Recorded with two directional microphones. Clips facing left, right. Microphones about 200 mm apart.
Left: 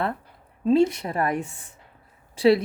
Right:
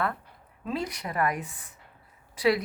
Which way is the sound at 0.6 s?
25° left (ahead or behind).